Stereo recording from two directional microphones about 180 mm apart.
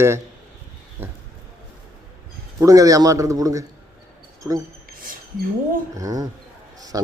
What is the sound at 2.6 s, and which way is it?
Speech, 20° right (ahead or behind).